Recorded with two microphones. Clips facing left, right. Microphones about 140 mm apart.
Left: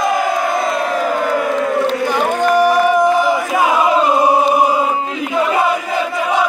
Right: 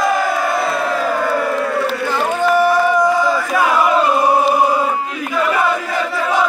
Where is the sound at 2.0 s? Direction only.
15° left (ahead or behind).